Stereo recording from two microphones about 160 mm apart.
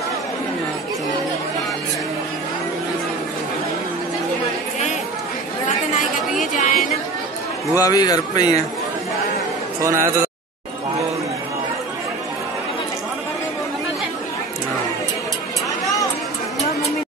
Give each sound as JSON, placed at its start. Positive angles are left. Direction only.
{"t": 6.4, "sound": "chatter", "side_deg": 55}
{"t": 7.8, "sound": "speech", "side_deg": 25}
{"t": 9.8, "sound": "speech", "side_deg": -15}